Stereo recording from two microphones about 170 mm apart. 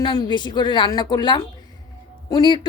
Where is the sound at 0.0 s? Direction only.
25° left (ahead or behind).